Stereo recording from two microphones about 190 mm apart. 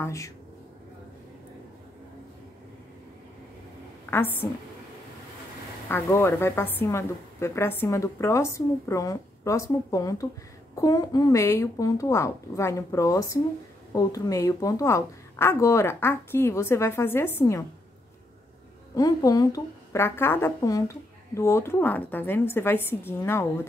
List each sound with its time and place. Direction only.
0.0 s speech: 15° left (ahead or behind)
4.1 s speech: 10° left (ahead or behind)
5.9 s speech: 10° left (ahead or behind)
18.9 s speech: 20° left (ahead or behind)